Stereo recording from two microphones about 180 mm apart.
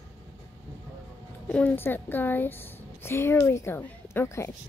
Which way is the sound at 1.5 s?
5° left (ahead or behind).